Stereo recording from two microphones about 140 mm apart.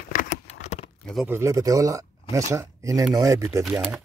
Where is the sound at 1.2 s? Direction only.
20° right (ahead or behind).